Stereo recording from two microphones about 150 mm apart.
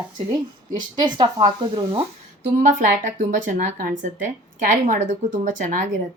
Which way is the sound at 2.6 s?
60° right (ahead or behind).